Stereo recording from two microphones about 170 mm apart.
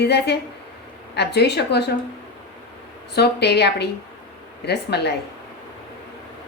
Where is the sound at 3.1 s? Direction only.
75° left (ahead or behind).